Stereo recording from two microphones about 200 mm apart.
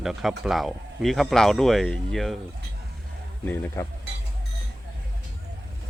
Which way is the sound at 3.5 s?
10° left (ahead or behind).